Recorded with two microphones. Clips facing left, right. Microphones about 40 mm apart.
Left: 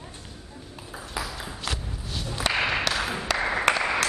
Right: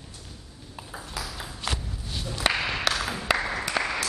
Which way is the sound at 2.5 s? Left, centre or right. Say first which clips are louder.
Left 3 dB; centre.